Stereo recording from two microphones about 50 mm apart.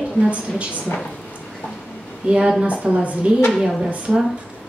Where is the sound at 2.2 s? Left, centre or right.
Centre.